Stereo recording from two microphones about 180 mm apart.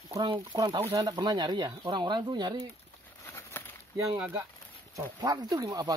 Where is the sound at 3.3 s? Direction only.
15° left (ahead or behind).